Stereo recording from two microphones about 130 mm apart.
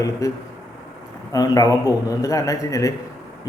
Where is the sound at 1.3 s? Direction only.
30° left (ahead or behind).